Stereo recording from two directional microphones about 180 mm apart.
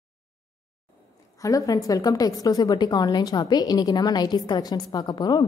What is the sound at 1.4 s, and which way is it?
A woman's voice, 20° left (ahead or behind).